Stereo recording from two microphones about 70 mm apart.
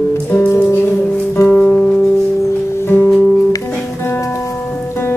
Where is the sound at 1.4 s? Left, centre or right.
Left.